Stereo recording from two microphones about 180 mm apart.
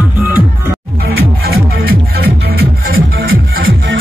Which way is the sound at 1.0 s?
60° right (ahead or behind).